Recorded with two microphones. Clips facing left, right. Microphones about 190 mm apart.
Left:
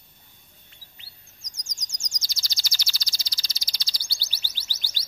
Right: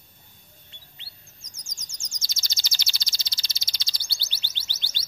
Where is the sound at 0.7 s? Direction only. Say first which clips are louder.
Right 2 dB; 25° right (ahead or behind).